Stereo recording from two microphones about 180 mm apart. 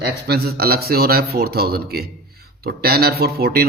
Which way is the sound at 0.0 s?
65° right (ahead or behind).